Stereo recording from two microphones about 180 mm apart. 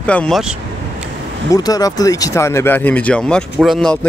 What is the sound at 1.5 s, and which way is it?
Speech, 20° left (ahead or behind).